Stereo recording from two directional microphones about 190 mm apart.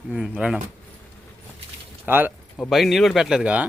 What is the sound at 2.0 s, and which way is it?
Speech, 10° right (ahead or behind).